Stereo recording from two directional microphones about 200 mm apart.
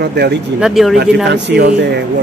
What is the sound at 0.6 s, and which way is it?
Speech, centre (ahead or behind).